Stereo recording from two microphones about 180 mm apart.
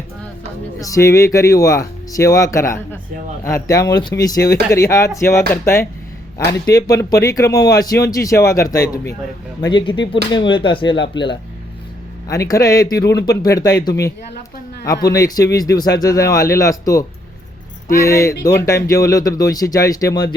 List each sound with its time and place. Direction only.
0.8 s speech: 20° left (ahead or behind)
12.3 s speech: 20° left (ahead or behind)
15.0 s speech: 20° left (ahead or behind)